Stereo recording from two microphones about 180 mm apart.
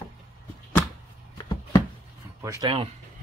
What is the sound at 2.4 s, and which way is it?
Speech, 20° right (ahead or behind).